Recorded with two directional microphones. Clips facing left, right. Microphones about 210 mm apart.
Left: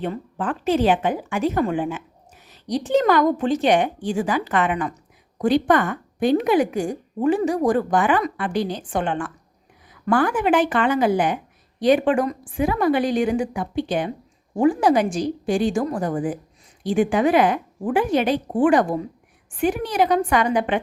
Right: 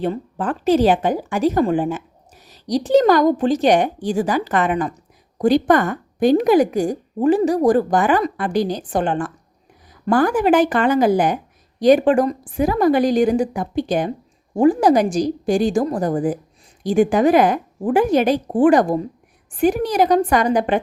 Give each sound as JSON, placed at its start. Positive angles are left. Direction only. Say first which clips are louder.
{"t": 0.0, "sound": "a woman's voice", "louder": "right 4 dB", "side_deg": -35}